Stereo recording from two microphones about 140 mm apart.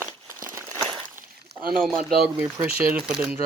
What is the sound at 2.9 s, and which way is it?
Speech, 10° right (ahead or behind).